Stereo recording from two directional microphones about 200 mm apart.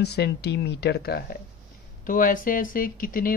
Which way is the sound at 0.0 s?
55° left (ahead or behind).